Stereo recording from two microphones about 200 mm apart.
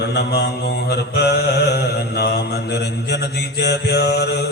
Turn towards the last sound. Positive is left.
turn(degrees=55)  # may be behind; listen again after turning